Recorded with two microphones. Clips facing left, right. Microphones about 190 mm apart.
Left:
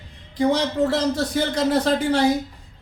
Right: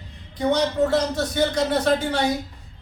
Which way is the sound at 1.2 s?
30° left (ahead or behind).